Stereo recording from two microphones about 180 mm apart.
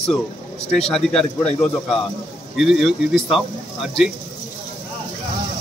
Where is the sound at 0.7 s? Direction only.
5° left (ahead or behind).